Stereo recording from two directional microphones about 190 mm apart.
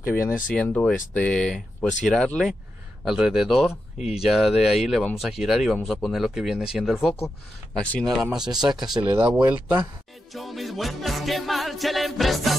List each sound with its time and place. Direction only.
0.0 s speech: 50° left (ahead or behind)
0.6 s speech: 5° left (ahead or behind)
8.5 s speech: 20° right (ahead or behind)
10.3 s music: centre (ahead or behind)